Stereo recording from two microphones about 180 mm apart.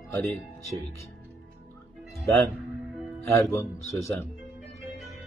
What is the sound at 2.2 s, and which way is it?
Speech, 15° left (ahead or behind).